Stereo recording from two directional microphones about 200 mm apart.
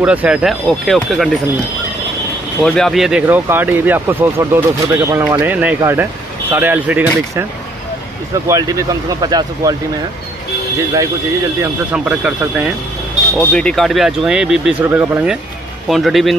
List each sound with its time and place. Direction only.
0.0 s speech: 5° right (ahead or behind)
2.6 s speech: centre (ahead or behind)
8.5 s speech: 15° right (ahead or behind)
11.6 s speech: 5° right (ahead or behind)
13.4 s speech: 5° left (ahead or behind)